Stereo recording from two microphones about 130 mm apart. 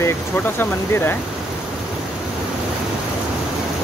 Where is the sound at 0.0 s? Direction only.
15° left (ahead or behind).